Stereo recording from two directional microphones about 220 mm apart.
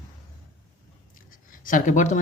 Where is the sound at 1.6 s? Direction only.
35° left (ahead or behind).